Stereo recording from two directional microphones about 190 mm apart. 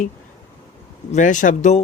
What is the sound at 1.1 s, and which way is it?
Speech, 40° left (ahead or behind).